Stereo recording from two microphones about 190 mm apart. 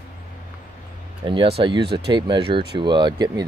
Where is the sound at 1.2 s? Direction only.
25° right (ahead or behind).